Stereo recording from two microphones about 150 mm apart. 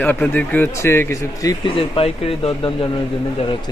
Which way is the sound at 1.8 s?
40° left (ahead or behind).